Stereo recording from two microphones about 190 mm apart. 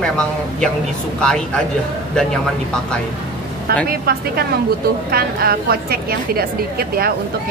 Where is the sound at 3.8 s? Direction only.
55° right (ahead or behind).